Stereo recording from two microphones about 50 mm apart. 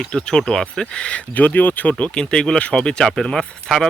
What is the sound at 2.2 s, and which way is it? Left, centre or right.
Speech, centre.